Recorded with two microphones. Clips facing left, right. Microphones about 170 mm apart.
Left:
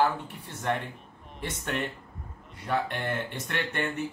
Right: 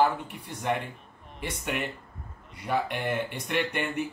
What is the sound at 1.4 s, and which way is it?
Speech, 10° right (ahead or behind).